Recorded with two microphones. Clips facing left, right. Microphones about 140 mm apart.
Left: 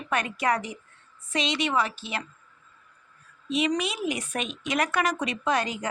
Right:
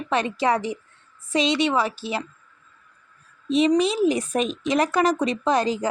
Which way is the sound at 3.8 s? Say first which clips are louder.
Right 9 dB; 35° right (ahead or behind).